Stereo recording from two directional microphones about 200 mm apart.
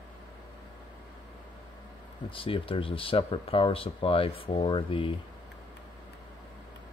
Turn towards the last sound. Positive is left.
turn(degrees=25)  # may be behind; listen again after turning